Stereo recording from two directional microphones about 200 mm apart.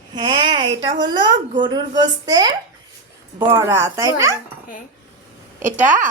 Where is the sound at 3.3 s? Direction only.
10° right (ahead or behind).